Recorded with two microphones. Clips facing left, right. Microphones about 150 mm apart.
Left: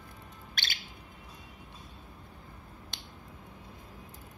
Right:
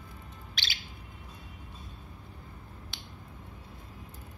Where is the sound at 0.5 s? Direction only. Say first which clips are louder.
Left 1 dB; 50° left (ahead or behind).